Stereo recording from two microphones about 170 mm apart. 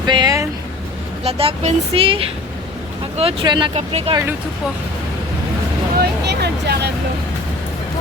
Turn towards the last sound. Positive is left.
turn(degrees=-75)  # may be behind; listen again after turning